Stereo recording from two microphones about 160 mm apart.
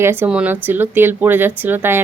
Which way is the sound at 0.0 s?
15° right (ahead or behind).